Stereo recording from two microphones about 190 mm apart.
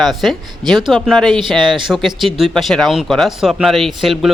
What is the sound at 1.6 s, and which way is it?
Speech, 25° right (ahead or behind).